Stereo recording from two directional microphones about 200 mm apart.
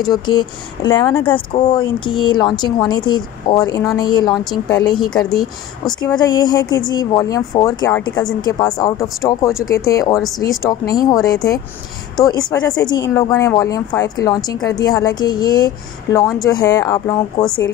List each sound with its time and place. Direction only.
0.0 s speech: 20° left (ahead or behind)